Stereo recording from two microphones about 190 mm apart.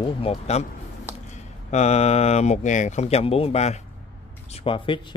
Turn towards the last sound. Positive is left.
turn(degrees=25)  # may be behind; listen again after turning